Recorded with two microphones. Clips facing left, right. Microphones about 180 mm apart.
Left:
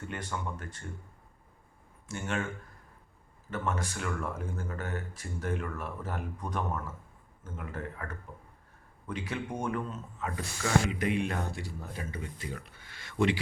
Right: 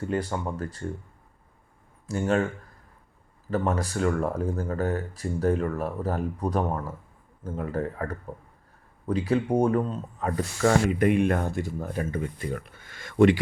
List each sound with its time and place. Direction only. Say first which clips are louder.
0.0 s speech: right 9 dB; 35° right (ahead or behind)
2.0 s speech: right 10 dB; 35° right (ahead or behind)
3.5 s speech: right 8 dB; 35° right (ahead or behind)